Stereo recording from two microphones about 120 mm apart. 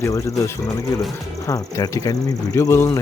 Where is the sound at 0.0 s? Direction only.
25° left (ahead or behind).